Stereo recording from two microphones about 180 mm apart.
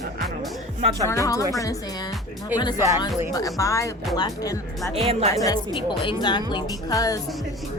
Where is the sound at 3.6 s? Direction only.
15° left (ahead or behind).